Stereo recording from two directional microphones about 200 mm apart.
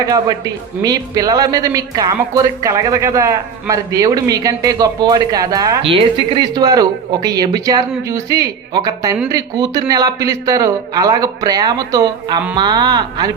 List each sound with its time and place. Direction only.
0.0 s speech: 20° right (ahead or behind)